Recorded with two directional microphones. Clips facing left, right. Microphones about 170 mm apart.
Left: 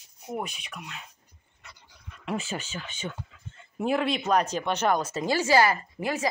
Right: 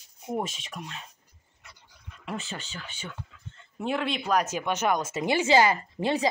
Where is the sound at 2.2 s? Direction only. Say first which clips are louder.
Left 4 dB; 5° left (ahead or behind).